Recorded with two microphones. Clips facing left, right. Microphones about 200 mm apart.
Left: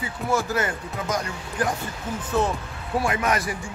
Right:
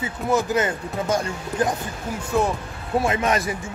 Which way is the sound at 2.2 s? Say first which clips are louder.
Right 2 dB; 10° right (ahead or behind).